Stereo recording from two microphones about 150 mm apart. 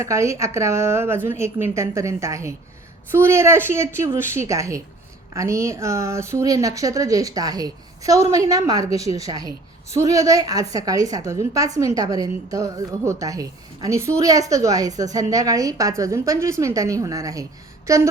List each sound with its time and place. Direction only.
0.0 s speech: 20° right (ahead or behind)